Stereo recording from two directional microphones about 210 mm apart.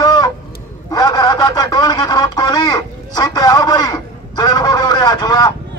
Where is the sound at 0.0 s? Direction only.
20° left (ahead or behind).